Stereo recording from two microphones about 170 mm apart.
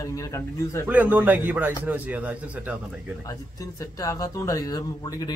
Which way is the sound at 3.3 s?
20° left (ahead or behind).